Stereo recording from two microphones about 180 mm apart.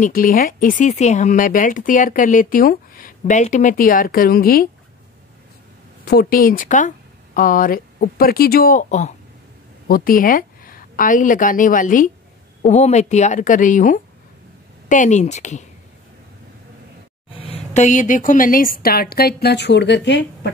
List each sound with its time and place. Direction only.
0.0 s speech: 50° left (ahead or behind)
6.0 s speech: 55° left (ahead or behind)
9.8 s a woman's voice: 55° left (ahead or behind)
17.4 s a woman's voice: 35° left (ahead or behind); by 20.2 s 75° left (ahead or behind)